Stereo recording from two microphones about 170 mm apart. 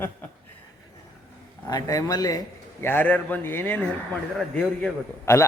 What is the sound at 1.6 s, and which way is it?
A man's voice, 20° left (ahead or behind).